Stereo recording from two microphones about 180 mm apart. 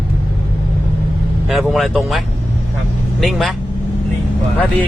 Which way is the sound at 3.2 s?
Centre (ahead or behind).